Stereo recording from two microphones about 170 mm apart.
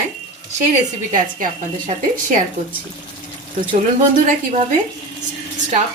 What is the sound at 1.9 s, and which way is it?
Speech, 35° right (ahead or behind).